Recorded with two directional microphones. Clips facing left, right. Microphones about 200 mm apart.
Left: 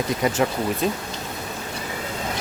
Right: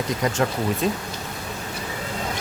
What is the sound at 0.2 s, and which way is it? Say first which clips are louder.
Speech: even; 5° left (ahead or behind).